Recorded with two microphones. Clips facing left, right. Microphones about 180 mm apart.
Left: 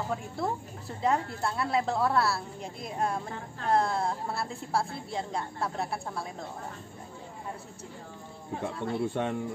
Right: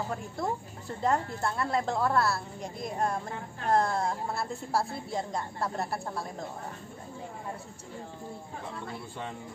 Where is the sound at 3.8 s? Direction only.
Centre (ahead or behind).